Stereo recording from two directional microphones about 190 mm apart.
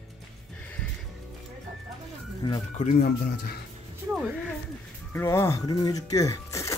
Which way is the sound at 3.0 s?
55° left (ahead or behind).